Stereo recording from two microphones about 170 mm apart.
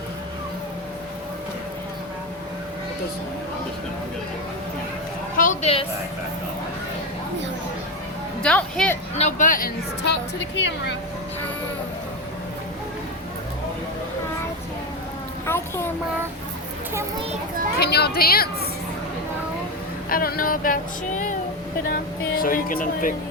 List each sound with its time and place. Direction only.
5.4 s a sound: 50° left (ahead or behind)
8.4 s speech: 5° left (ahead or behind)
9.1 s speech: 45° left (ahead or behind); by 10.9 s 90° left
15.4 s a sound: 15° left (ahead or behind)
17.7 s a woman's voice: 70° left (ahead or behind)
20.1 s speech: 60° left (ahead or behind)
22.4 s speech: 55° left (ahead or behind)